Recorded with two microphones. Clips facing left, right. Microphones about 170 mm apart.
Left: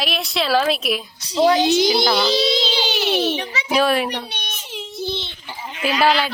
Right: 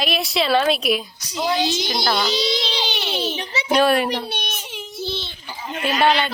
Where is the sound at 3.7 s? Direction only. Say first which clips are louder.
Right 1 dB; centre (ahead or behind).